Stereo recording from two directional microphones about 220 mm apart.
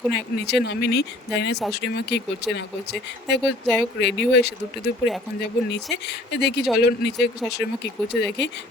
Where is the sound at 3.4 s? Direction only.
Centre (ahead or behind).